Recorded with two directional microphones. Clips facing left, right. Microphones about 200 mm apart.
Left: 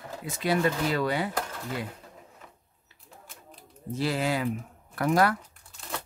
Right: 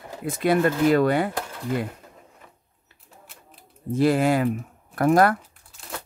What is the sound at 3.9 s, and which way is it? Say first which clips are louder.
Speech: right 8 dB; 50° right (ahead or behind).